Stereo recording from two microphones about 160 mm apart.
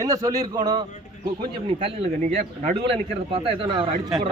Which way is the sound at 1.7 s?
35° right (ahead or behind).